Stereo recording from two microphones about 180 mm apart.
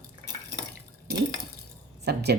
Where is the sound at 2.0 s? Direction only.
65° right (ahead or behind).